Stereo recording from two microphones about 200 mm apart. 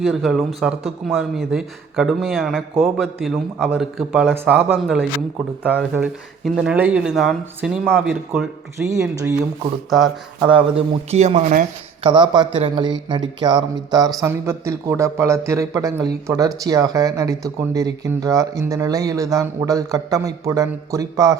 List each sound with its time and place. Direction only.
0.0 s speech: centre (ahead or behind)
8.8 s speech: 15° right (ahead or behind)
9.9 s speech: centre (ahead or behind)
10.5 s speech: 30° right (ahead or behind)
12.0 s speech: 20° right (ahead or behind)